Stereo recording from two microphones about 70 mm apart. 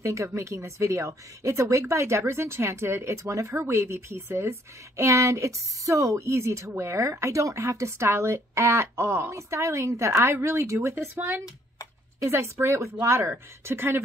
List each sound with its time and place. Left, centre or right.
0.0 s speech: right